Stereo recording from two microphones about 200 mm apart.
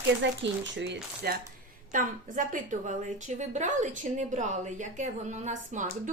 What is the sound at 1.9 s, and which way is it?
A woman's voice, 40° right (ahead or behind).